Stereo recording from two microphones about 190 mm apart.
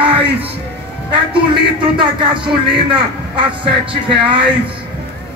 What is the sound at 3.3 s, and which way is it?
Speech, 25° right (ahead or behind).